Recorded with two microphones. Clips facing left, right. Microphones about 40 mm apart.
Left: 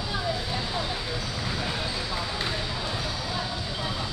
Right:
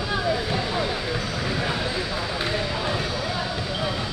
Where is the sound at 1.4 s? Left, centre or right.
Right.